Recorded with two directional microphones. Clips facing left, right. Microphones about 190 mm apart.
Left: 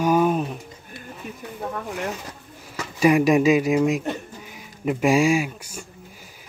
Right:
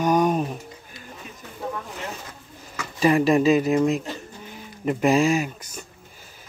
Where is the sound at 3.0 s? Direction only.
10° left (ahead or behind).